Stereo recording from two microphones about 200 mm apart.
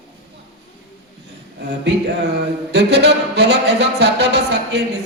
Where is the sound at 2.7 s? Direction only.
55° right (ahead or behind).